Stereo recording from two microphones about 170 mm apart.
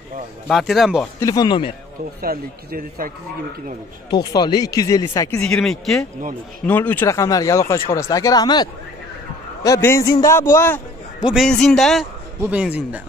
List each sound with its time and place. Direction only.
0.5 s a man's voice: centre (ahead or behind)
1.2 s speech: 25° left (ahead or behind)
2.2 s a man's voice: 60° right (ahead or behind)
4.1 s speech: 25° left (ahead or behind)
5.4 s a man's voice: 5° left (ahead or behind)
11.1 s a man's voice: 5° right (ahead or behind)